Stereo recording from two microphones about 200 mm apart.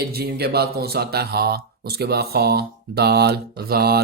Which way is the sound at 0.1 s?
50° right (ahead or behind).